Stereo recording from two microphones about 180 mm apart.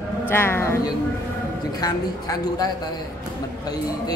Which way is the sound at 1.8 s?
20° left (ahead or behind).